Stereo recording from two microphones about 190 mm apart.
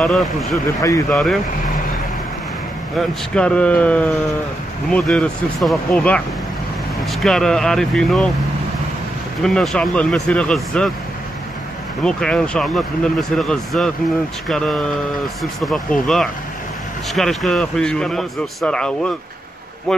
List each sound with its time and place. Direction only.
0.0 s speech: centre (ahead or behind)
0.7 s speech: 15° left (ahead or behind)
1.1 s speech: centre (ahead or behind)
3.0 s speech: 5° left (ahead or behind)
9.4 s speech: centre (ahead or behind)
12.0 s speech: 5° left (ahead or behind)